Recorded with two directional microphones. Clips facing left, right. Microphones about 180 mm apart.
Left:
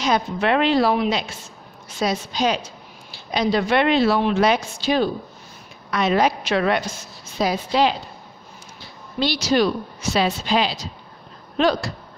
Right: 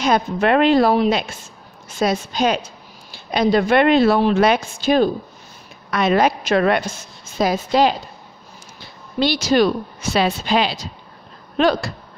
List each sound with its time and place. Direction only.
0.0 s a woman's voice: 50° right (ahead or behind)
9.2 s a woman's voice: 50° right (ahead or behind)